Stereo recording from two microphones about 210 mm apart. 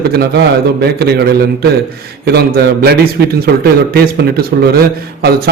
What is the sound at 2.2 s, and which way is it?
A man's voice, 50° right (ahead or behind).